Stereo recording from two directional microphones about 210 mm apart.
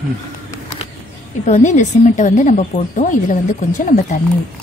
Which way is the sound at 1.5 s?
35° left (ahead or behind).